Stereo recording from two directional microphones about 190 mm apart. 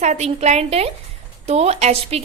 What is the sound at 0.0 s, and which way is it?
A woman's voice, 35° right (ahead or behind).